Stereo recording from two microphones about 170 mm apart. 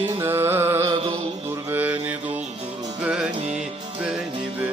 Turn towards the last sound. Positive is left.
turn(degrees=-5)  # may be behind; listen again after turning